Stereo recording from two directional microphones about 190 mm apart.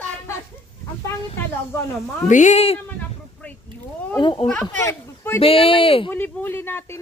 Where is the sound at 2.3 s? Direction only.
40° left (ahead or behind).